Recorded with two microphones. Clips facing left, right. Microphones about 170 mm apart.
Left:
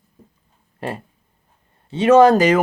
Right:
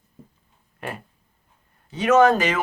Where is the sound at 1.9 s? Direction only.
30° left (ahead or behind).